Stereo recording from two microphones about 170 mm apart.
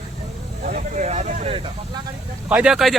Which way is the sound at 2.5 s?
5° right (ahead or behind).